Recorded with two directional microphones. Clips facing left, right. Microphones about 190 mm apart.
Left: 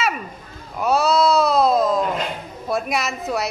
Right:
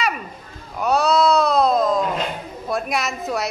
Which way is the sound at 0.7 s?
Centre (ahead or behind).